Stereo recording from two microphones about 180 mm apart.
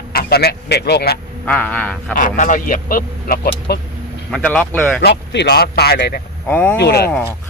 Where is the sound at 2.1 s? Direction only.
45° left (ahead or behind).